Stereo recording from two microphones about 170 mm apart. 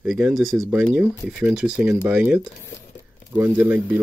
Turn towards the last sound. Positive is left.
turn(degrees=-10)  # may be behind; listen again after turning